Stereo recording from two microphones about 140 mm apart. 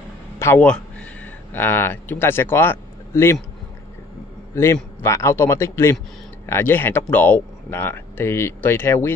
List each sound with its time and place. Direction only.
0.4 s speech: 15° left (ahead or behind)
5.0 s speech: 20° left (ahead or behind)